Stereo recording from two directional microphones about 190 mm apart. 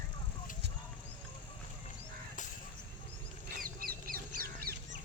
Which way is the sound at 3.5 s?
50° right (ahead or behind).